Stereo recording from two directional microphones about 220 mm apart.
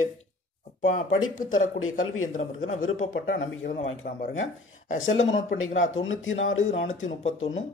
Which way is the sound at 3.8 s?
30° left (ahead or behind).